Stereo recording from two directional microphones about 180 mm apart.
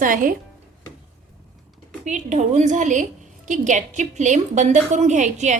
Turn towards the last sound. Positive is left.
turn(degrees=-40)  # may be behind; listen again after turning